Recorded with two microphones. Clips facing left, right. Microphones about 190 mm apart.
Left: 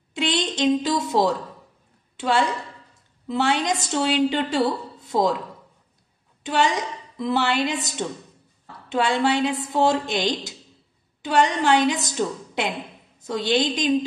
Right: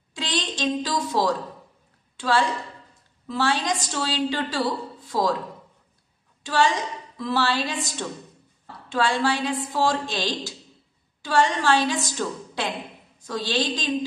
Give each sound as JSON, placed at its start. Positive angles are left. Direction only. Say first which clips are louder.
{"t": 0.1, "sound": "a woman's voice", "louder": "left 5 dB", "side_deg": 20}
{"t": 6.4, "sound": "a woman's voice", "louder": "even", "side_deg": 20}